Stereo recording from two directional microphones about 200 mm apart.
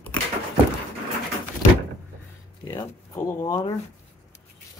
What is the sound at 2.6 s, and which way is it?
Speech, 15° left (ahead or behind).